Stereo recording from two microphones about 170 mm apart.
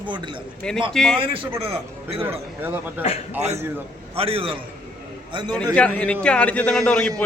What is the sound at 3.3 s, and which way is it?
A man's voice, 40° right (ahead or behind).